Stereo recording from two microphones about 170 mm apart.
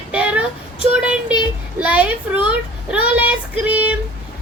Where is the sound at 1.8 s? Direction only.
10° right (ahead or behind).